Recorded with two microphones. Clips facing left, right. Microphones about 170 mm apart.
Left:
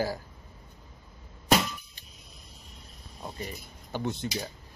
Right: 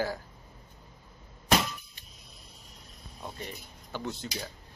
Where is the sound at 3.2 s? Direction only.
15° left (ahead or behind).